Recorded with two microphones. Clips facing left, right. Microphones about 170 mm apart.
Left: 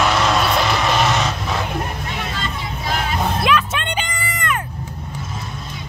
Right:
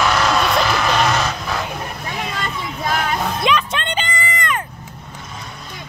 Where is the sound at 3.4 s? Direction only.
5° left (ahead or behind).